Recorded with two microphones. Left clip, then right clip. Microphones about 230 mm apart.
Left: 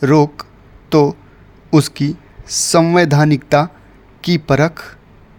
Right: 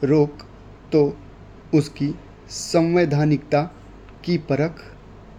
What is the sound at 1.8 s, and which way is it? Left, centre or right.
Speech, left.